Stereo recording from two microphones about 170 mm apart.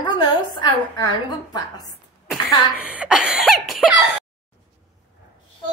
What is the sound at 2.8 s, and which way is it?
A child's voice, 5° right (ahead or behind).